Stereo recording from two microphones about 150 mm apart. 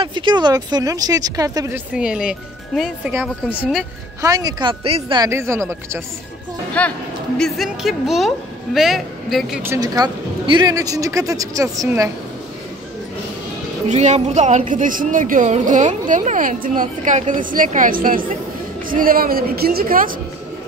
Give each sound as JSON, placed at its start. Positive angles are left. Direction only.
{"t": 0.0, "sound": "speech", "side_deg": -35}
{"t": 1.7, "sound": "speech", "side_deg": -5}
{"t": 4.2, "sound": "speech", "side_deg": -25}
{"t": 5.2, "sound": "speech", "side_deg": -20}
{"t": 6.8, "sound": "a man's voice", "side_deg": 10}
{"t": 9.8, "sound": "speech", "side_deg": -25}
{"t": 13.8, "sound": "a woman's voice", "side_deg": -50}